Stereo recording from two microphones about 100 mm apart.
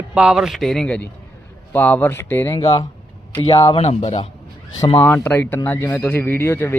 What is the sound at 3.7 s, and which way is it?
Speech, 90° left.